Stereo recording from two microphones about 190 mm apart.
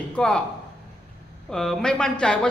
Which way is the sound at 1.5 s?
5° left (ahead or behind).